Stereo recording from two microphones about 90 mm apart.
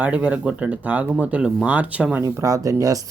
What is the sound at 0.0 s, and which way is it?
Speech, 15° right (ahead or behind).